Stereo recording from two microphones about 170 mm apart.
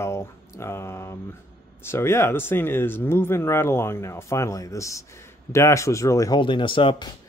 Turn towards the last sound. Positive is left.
turn(degrees=30)  # may be behind; listen again after turning